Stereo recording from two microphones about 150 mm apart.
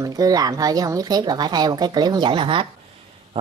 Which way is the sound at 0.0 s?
25° right (ahead or behind).